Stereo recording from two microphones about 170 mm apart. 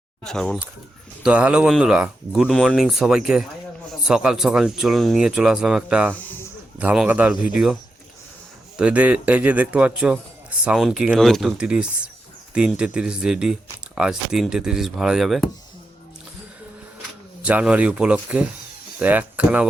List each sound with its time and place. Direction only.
0.3 s speech: 5° left (ahead or behind)
8.8 s speech: 10° right (ahead or behind)
17.4 s speech: 5° right (ahead or behind)